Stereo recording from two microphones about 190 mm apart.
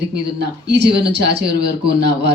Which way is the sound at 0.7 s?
65° right (ahead or behind).